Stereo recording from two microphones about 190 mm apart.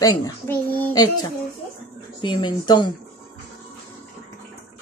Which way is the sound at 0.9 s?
20° left (ahead or behind).